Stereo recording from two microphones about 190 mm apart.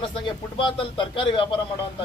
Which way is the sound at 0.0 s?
25° left (ahead or behind).